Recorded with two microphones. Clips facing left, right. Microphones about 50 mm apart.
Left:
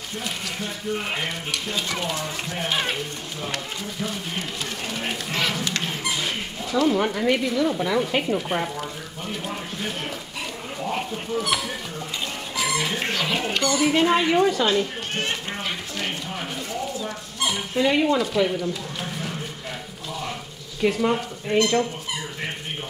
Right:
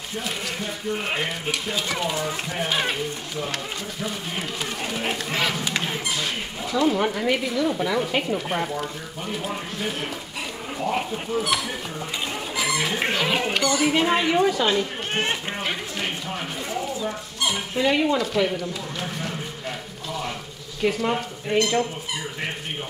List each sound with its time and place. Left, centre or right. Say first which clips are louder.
0.9 s speech: right 1 dB; centre
6.1 s speech: even; centre
12.5 s a sound: even; centre
13.1 s speech: right 2 dB; centre
15.1 s a sound: right 2 dB; centre
17.0 s speech: right 1 dB; centre
20.8 s speech: left 2 dB; centre